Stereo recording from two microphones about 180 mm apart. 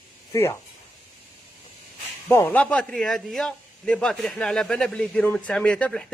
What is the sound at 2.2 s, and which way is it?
A man's voice, 10° left (ahead or behind).